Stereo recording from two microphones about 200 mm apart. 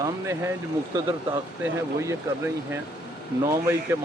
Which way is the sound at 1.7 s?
15° right (ahead or behind).